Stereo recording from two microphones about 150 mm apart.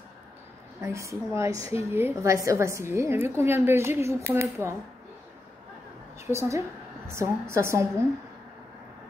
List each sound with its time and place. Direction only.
0.7 s a woman's voice: 20° right (ahead or behind)
6.2 s a woman's voice: 15° right (ahead or behind)